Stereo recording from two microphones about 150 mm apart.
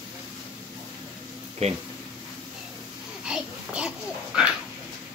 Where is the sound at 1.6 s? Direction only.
45° right (ahead or behind).